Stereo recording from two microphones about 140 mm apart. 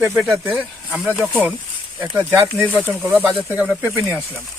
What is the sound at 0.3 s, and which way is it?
Speech, 10° right (ahead or behind).